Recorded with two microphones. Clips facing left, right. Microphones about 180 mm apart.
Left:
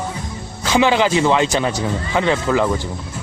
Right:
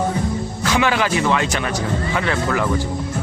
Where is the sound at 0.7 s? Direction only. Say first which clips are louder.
Left 4 dB; 25° left (ahead or behind).